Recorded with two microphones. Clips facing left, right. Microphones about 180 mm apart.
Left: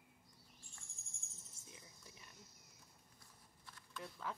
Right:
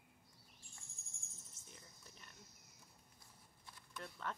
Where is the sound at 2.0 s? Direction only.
10° left (ahead or behind).